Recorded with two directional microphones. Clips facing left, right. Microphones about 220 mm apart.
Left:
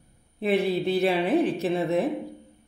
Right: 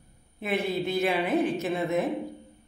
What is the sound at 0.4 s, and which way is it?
Speech, 35° left (ahead or behind).